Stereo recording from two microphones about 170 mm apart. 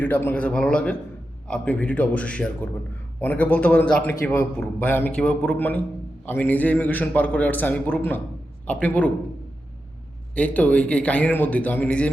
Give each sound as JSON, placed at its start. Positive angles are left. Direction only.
{"t": 0.0, "sound": "a man's voice", "side_deg": 10}
{"t": 10.3, "sound": "a man's voice", "side_deg": 10}